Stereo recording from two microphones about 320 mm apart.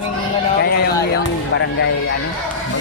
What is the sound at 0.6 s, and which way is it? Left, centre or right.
Speech, left.